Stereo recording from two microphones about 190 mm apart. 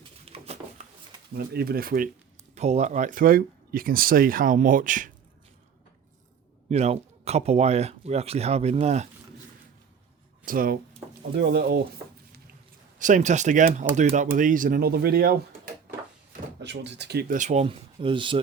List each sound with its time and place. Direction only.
0.3 s a sound: 35° right (ahead or behind)
1.4 s speech: 50° right (ahead or behind)
2.6 s speech: 35° right (ahead or behind)
6.7 s speech: 35° right (ahead or behind)
10.4 s speech: 50° right (ahead or behind)
11.3 s speech: 60° right (ahead or behind)
13.0 s speech: 40° right (ahead or behind)